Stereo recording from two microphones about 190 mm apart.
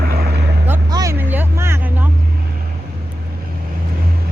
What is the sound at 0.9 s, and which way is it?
Vehicle, 15° right (ahead or behind).